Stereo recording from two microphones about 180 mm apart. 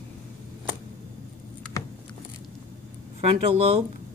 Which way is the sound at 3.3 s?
35° right (ahead or behind).